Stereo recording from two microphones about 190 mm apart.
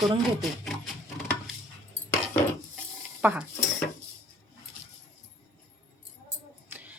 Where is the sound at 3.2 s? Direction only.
10° right (ahead or behind).